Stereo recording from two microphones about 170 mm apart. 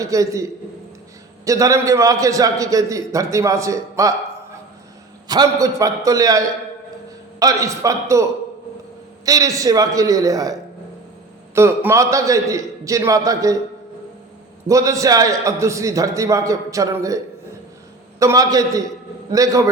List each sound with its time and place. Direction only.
0.0 s a man's voice: 20° right (ahead or behind)
1.5 s a man's voice: 20° right (ahead or behind)
5.3 s a man's voice: 20° right (ahead or behind)
11.5 s a man's voice: 15° right (ahead or behind)
14.7 s a man's voice: 20° right (ahead or behind)
18.2 s a man's voice: 20° right (ahead or behind)